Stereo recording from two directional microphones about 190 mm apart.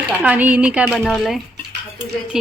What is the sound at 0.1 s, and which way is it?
Speech, 5° right (ahead or behind).